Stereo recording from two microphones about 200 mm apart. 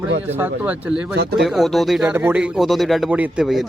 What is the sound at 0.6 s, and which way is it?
Speech, 5° right (ahead or behind).